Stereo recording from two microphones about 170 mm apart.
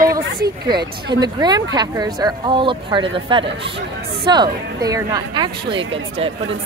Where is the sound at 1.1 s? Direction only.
25° right (ahead or behind).